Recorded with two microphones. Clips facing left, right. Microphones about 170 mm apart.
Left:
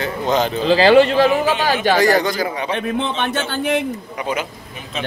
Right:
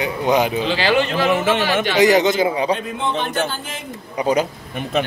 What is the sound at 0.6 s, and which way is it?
Speech, 35° left (ahead or behind).